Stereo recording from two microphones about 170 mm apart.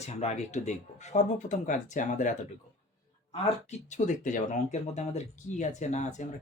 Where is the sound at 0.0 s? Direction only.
40° left (ahead or behind).